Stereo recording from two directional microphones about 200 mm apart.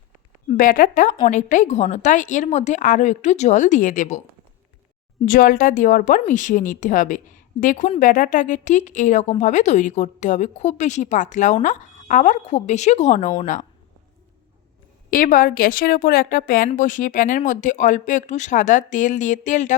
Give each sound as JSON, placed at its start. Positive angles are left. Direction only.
{"t": 0.4, "sound": "a woman's voice", "side_deg": 40}
{"t": 5.2, "sound": "a woman's voice", "side_deg": 45}
{"t": 15.1, "sound": "a woman's voice", "side_deg": 45}